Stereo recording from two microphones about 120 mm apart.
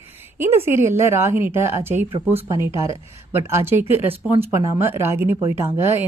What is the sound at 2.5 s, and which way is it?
Speech, 25° right (ahead or behind).